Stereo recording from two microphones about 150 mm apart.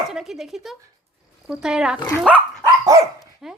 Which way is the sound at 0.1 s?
Centre (ahead or behind).